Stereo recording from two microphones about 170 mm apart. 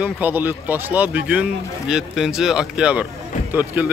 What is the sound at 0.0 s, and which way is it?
Speech, 10° right (ahead or behind).